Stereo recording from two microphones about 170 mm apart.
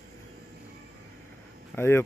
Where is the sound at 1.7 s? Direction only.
15° left (ahead or behind).